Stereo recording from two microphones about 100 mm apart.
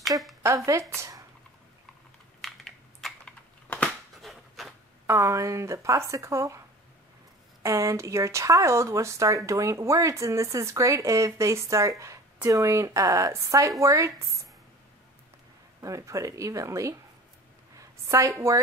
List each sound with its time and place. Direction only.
0.7 s speech: 30° right (ahead or behind)
2.4 s typing: centre (ahead or behind)
4.2 s a sound: centre (ahead or behind)
5.0 s speech: 30° right (ahead or behind)
7.6 s speech: 30° right (ahead or behind)
15.8 s speech: 35° right (ahead or behind)
17.7 s a sound: 35° right (ahead or behind)